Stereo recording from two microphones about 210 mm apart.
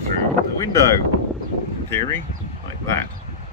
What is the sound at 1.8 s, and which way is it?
Speech, 15° left (ahead or behind).